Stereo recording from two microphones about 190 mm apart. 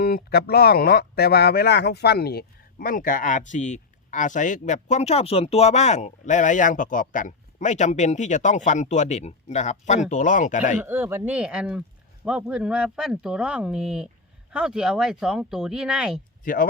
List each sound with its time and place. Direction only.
0.0 s speech: 55° left (ahead or behind)
10.8 s speech: 10° right (ahead or behind)
16.4 s speech: 45° left (ahead or behind)